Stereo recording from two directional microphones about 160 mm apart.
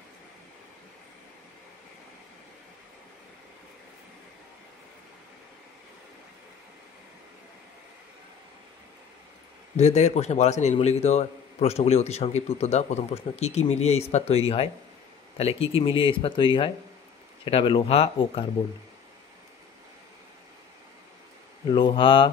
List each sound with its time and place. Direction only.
9.8 s a man's voice: 45° left (ahead or behind)
21.7 s speech: 30° left (ahead or behind)